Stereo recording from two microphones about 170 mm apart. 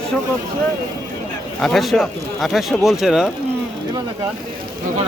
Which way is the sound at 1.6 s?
Centre (ahead or behind).